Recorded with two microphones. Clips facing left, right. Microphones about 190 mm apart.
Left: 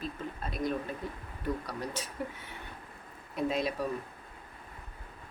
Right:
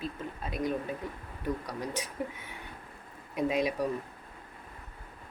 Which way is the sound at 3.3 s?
15° right (ahead or behind).